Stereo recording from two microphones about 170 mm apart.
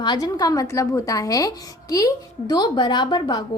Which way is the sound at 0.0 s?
25° left (ahead or behind).